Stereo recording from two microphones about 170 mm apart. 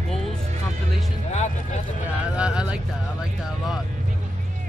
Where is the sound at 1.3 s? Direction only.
45° left (ahead or behind).